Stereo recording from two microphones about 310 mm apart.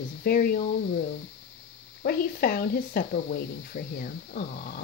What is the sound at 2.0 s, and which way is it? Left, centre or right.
Speech, left.